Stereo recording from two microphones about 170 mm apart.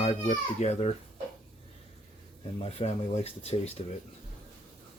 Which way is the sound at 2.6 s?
40° left (ahead or behind).